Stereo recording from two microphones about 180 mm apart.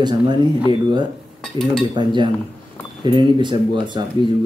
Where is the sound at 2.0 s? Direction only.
25° right (ahead or behind).